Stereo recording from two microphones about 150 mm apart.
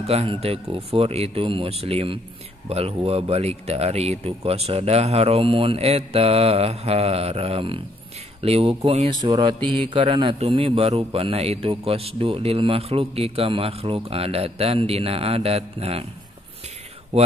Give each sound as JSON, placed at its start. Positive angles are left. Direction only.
{"t": 0.0, "sound": "a man's voice", "side_deg": -40}
{"t": 9.2, "sound": "mantra", "side_deg": -30}
{"t": 9.7, "sound": "a man's voice", "side_deg": -35}
{"t": 17.1, "sound": "speech", "side_deg": -40}